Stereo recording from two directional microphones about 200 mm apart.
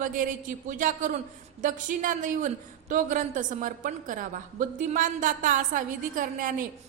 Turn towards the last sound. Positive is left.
turn(degrees=-40)  # may be behind; listen again after turning